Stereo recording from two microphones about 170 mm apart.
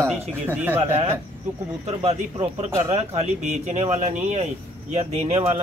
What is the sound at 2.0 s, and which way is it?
Speech, 40° right (ahead or behind).